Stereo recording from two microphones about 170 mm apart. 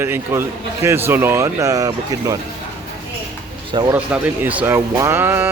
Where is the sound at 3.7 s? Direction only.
25° right (ahead or behind).